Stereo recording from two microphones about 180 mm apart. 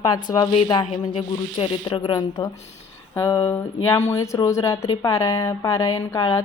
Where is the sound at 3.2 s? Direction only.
15° left (ahead or behind).